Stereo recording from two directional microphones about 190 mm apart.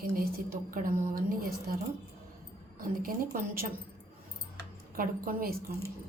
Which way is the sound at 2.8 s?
45° right (ahead or behind).